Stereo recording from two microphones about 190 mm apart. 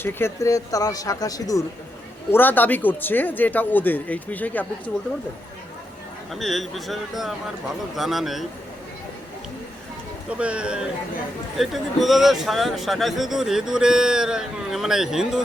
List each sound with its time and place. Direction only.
0.0 s speech: 10° left (ahead or behind)
6.3 s a man's voice: centre (ahead or behind)
10.2 s a man's voice: 5° right (ahead or behind)